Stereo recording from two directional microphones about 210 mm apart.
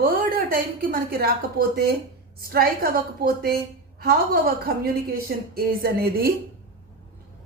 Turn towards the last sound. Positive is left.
turn(degrees=-45)  # may be behind; listen again after turning